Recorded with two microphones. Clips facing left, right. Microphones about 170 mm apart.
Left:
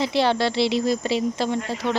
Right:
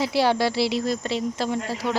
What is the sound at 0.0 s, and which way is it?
A child's voice, 5° right (ahead or behind).